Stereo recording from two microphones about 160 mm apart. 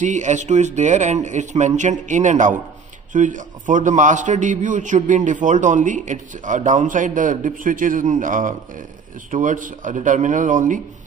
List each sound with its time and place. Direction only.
0.0 s a man's voice: 50° right (ahead or behind)